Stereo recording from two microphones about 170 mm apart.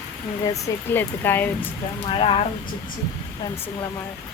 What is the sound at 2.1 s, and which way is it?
Speech, 30° left (ahead or behind).